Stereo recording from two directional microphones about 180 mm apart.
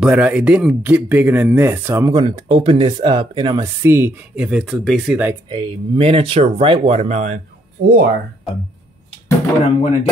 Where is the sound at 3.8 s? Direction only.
10° right (ahead or behind).